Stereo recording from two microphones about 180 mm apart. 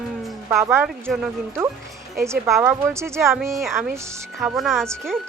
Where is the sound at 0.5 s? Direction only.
15° right (ahead or behind).